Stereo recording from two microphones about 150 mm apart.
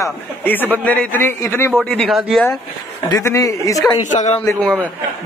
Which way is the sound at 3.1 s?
20° left (ahead or behind).